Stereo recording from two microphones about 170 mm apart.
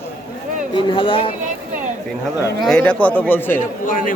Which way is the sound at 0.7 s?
30° left (ahead or behind).